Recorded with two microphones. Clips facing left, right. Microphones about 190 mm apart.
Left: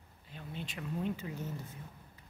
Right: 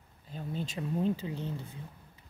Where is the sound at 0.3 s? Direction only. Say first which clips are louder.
Right 7 dB; 35° right (ahead or behind).